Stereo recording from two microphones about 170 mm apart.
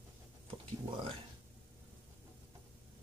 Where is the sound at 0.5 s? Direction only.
35° right (ahead or behind).